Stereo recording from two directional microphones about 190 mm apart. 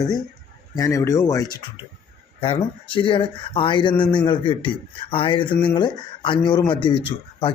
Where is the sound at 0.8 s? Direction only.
15° left (ahead or behind).